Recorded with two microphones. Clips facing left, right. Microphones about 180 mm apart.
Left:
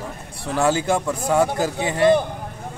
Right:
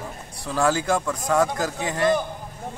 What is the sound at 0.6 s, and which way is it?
Speech, 25° left (ahead or behind).